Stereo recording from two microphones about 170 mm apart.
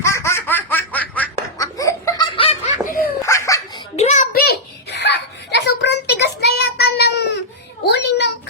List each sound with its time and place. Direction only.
0.0 s baby laughter: 15° left (ahead or behind)
1.8 s laughter: 20° left (ahead or behind)
2.2 s laughter: 30° left (ahead or behind)
2.8 s giggle: 55° left (ahead or behind)
3.2 s dog: 15° left (ahead or behind)
3.9 s a sound: 40° left (ahead or behind); by 7.3 s 75° left (ahead or behind)
7.9 s child singing: 85° left